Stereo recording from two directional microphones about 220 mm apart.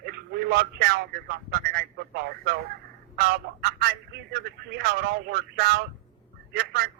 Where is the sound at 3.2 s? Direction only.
45° right (ahead or behind).